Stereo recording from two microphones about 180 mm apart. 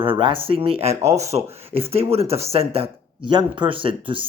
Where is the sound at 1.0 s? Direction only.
15° right (ahead or behind).